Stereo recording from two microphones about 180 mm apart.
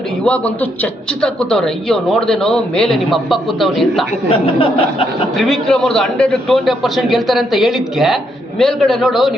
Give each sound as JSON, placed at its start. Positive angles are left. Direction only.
{"t": 0.3, "sound": "a man's voice", "side_deg": 10}
{"t": 4.3, "sound": "speech", "side_deg": 30}
{"t": 5.4, "sound": "a man's voice", "side_deg": 0}